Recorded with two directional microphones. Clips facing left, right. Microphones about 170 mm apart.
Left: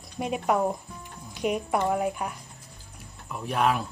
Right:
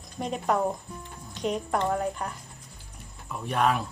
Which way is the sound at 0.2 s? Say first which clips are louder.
Left 1 dB; 10° left (ahead or behind).